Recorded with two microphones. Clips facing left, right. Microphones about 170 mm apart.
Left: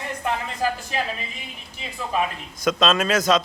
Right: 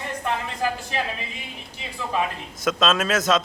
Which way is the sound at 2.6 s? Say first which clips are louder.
Left 1 dB; centre (ahead or behind).